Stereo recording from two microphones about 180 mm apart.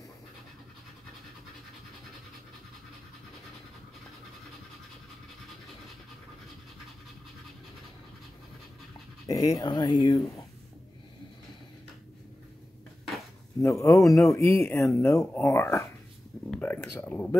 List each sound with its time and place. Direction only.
9.3 s speech: 20° left (ahead or behind)
13.6 s speech: 15° left (ahead or behind)
16.4 s a sound: 10° left (ahead or behind)
17.0 s speech: 10° left (ahead or behind)